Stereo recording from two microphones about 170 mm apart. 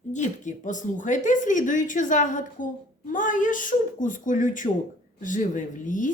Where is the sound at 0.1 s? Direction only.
45° left (ahead or behind).